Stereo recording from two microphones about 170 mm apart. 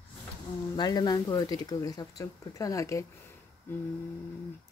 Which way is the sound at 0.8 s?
25° left (ahead or behind).